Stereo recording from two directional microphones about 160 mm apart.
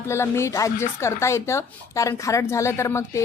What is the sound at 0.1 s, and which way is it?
Speech, 15° left (ahead or behind).